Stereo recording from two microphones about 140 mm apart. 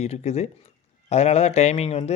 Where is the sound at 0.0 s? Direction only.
50° left (ahead or behind).